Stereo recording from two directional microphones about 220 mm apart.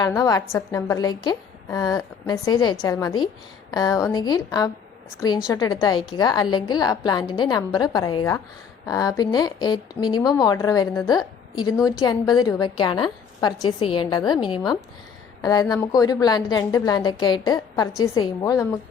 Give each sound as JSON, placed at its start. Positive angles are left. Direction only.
{"t": 0.0, "sound": "a woman's voice", "side_deg": 15}